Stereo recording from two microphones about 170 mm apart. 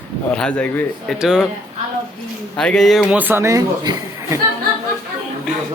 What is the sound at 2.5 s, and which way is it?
Speech, 5° left (ahead or behind).